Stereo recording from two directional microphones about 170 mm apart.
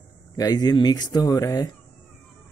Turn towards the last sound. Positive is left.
turn(degrees=20)  # may be behind; listen again after turning